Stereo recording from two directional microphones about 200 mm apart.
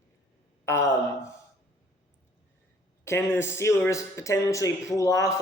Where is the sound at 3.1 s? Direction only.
10° left (ahead or behind).